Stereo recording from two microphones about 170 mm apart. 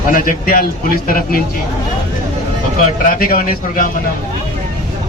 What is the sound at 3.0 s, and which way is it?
Speech, 60° left (ahead or behind).